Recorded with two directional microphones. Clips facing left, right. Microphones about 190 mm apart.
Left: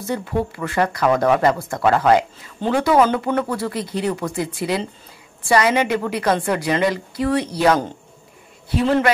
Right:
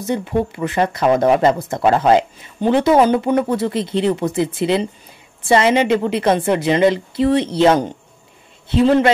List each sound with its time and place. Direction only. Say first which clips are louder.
0.0 s speech: right 3 dB; 20° right (ahead or behind)